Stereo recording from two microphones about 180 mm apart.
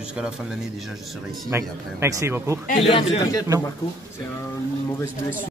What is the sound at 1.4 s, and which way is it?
A man's voice, 15° right (ahead or behind).